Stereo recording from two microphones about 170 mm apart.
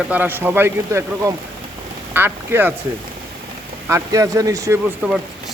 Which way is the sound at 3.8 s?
15° right (ahead or behind).